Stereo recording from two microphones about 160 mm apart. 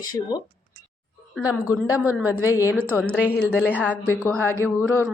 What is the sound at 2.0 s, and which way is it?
Speech, 10° right (ahead or behind).